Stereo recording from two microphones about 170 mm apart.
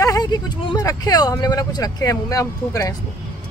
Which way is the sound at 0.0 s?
20° left (ahead or behind).